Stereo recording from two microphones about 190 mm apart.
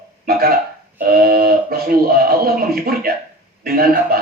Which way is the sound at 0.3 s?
50° right (ahead or behind).